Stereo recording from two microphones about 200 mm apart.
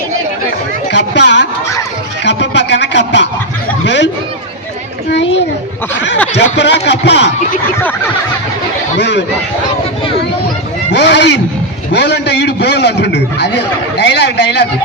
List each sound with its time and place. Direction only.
0.9 s a sound: 60° left (ahead or behind)
3.8 s chatter: 60° left (ahead or behind)
6.6 s a man's voice: 60° left (ahead or behind)
9.0 s a man's voice: 60° left (ahead or behind)
10.9 s a man's voice: 60° left (ahead or behind)